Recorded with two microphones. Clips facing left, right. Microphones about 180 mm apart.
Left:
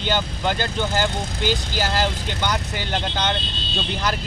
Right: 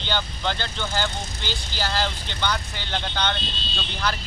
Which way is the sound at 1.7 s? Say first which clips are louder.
Left 4 dB; 45° left (ahead or behind).